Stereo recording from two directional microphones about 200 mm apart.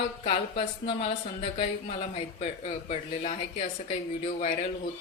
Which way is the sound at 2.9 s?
30° left (ahead or behind).